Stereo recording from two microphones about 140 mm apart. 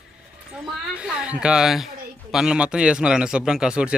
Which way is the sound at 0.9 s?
5° right (ahead or behind).